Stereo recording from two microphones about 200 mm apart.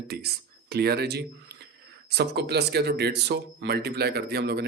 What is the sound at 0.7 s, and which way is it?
Speech, 55° right (ahead or behind).